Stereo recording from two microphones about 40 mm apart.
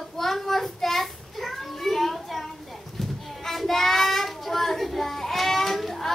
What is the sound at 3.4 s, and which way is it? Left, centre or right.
Child singing, centre.